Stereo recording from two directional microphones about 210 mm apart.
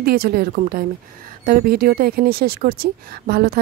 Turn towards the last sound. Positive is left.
turn(degrees=-45)  # may be behind; listen again after turning